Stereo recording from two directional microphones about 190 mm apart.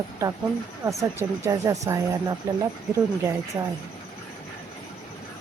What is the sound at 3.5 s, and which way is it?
Speech, 15° right (ahead or behind).